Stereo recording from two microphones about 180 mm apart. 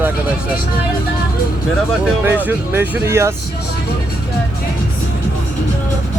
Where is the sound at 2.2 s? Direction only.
10° right (ahead or behind).